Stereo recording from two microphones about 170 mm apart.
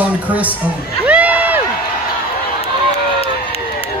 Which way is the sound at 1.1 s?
10° right (ahead or behind).